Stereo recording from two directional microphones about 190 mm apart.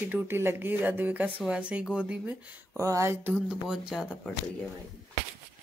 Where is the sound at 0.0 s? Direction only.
10° right (ahead or behind).